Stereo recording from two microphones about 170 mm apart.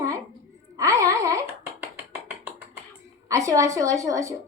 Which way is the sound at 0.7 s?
20° right (ahead or behind).